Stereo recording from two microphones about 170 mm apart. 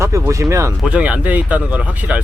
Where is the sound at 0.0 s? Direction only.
15° right (ahead or behind).